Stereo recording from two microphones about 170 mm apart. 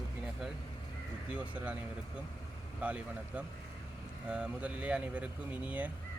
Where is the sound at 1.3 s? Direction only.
10° right (ahead or behind).